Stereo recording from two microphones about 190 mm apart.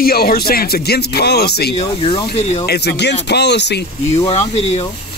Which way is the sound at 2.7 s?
60° left (ahead or behind).